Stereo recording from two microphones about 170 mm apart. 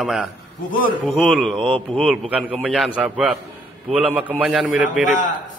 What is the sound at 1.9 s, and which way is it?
A man's voice, centre (ahead or behind).